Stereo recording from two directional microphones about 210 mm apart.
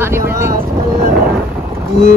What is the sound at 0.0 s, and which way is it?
Speech, 10° right (ahead or behind).